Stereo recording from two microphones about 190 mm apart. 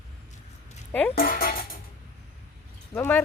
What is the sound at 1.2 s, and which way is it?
Speech, 50° left (ahead or behind).